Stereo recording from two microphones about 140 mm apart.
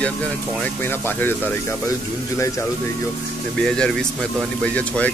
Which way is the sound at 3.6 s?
5° left (ahead or behind).